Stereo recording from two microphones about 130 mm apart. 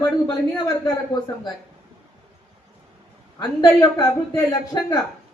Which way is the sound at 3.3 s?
30° left (ahead or behind).